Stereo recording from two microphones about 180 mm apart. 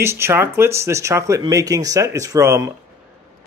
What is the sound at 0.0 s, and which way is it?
Speech, 15° right (ahead or behind).